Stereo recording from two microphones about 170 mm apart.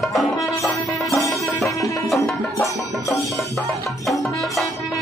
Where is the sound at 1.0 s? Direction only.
Centre (ahead or behind).